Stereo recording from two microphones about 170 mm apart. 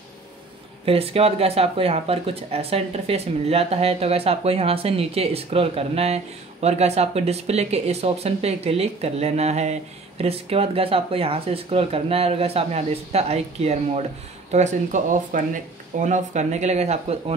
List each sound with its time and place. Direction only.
0.8 s speech: 35° right (ahead or behind)